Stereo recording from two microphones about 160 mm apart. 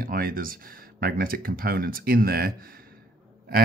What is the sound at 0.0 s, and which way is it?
Speech, 65° right (ahead or behind).